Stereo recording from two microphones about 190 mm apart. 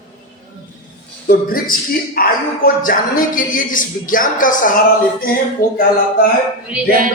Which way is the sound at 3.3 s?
45° left (ahead or behind).